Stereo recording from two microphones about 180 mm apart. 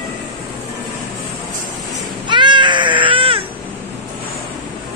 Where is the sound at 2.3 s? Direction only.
25° right (ahead or behind).